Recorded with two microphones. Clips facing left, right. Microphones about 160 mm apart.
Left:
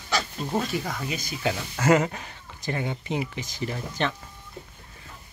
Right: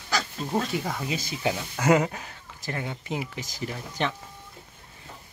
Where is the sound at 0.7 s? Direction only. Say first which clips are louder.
Right 1 dB; 25° right (ahead or behind).